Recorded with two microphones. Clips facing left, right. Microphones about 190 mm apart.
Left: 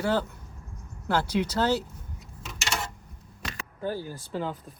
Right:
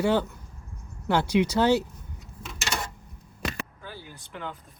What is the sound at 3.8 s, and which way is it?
Speech, 45° left (ahead or behind).